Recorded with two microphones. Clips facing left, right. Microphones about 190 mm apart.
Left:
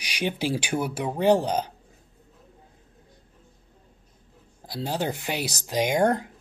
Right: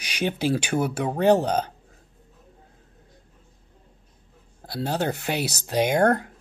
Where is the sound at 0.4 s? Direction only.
10° left (ahead or behind).